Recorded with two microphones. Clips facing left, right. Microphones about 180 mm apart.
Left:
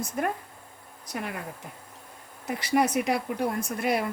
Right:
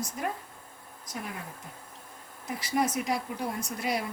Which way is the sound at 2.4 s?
65° left (ahead or behind).